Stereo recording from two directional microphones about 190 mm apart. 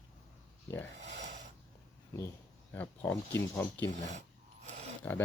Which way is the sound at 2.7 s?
10° left (ahead or behind).